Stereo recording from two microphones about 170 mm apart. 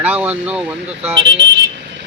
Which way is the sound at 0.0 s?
10° right (ahead or behind).